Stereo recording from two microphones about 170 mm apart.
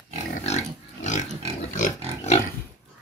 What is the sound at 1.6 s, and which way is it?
Pig, 45° left (ahead or behind).